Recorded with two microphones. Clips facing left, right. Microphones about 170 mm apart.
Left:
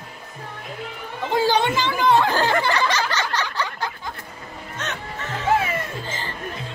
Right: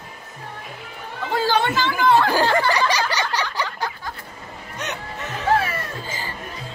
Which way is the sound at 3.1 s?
10° right (ahead or behind).